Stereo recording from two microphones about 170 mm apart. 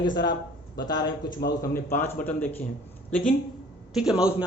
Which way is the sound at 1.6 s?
15° left (ahead or behind).